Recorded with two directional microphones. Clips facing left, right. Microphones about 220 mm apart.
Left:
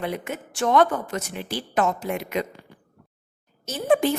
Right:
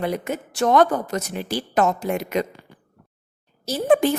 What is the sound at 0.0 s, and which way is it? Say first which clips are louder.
A woman's voice: right 4 dB; 40° right (ahead or behind).